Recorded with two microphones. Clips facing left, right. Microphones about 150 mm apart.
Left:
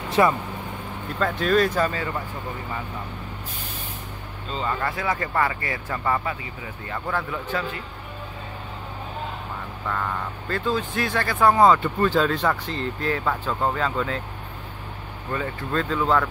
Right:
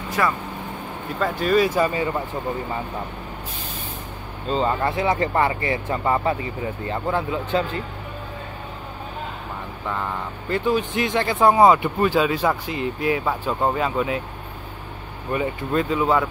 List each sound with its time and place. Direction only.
0.1 s speech: 20° left (ahead or behind)
1.2 s speech: 5° right (ahead or behind)
4.5 s speech: 30° right (ahead or behind)
10.5 s speech: 15° right (ahead or behind)
15.3 s speech: 15° right (ahead or behind)